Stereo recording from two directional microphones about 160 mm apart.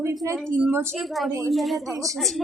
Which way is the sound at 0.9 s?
Centre (ahead or behind).